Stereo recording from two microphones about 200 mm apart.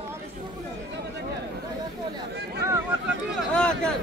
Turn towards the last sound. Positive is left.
turn(degrees=5)  # may be behind; listen again after turning